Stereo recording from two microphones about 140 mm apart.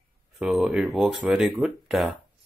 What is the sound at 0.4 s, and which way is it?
Speech, 5° right (ahead or behind).